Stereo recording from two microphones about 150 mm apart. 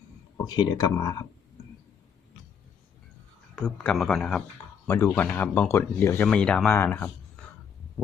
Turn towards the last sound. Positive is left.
turn(degrees=15)  # may be behind; listen again after turning